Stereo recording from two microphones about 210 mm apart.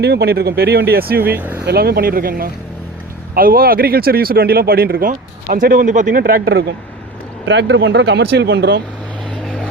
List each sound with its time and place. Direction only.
0.0 s speech: 50° right (ahead or behind)
1.4 s speech: 10° right (ahead or behind)
1.6 s speech: 50° right (ahead or behind)
9.4 s vehicle: centre (ahead or behind)